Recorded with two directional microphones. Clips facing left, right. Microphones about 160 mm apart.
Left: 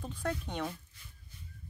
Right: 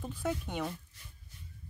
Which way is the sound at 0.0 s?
5° right (ahead or behind).